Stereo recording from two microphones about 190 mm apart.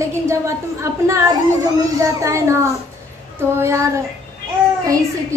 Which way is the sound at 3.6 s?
15° right (ahead or behind).